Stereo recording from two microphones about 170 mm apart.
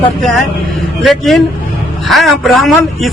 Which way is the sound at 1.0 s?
Centre (ahead or behind).